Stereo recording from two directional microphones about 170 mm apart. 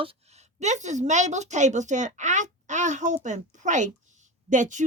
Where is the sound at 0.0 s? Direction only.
35° right (ahead or behind).